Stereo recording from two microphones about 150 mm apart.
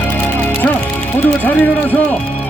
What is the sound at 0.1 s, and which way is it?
Music, 10° left (ahead or behind).